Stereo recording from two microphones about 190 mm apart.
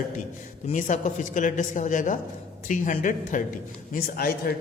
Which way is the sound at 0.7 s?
40° left (ahead or behind).